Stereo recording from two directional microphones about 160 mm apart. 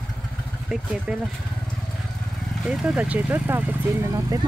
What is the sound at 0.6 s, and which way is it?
Speech, 5° right (ahead or behind).